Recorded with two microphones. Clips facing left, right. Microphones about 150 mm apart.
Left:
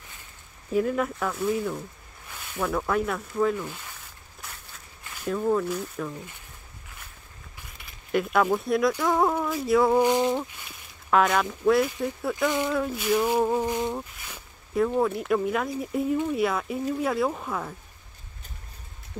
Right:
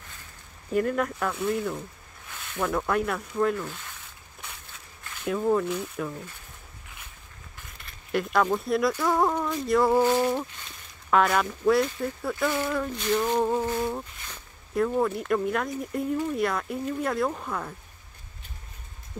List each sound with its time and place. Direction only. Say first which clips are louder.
0.7 s speech: left 1 dB; centre (ahead or behind)
4.4 s a sound: even; centre (ahead or behind)
7.5 s a sound: even; 5° left (ahead or behind)
9.0 s speech: left 1 dB; centre (ahead or behind)
10.0 s speech: left 1 dB; 15° left (ahead or behind)
12.4 s speech: left 2 dB; 15° left (ahead or behind)